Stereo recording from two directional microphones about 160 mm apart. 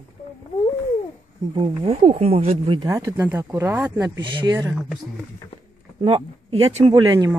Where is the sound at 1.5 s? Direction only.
35° right (ahead or behind).